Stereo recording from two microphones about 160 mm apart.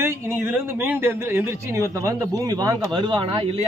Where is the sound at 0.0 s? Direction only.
15° right (ahead or behind).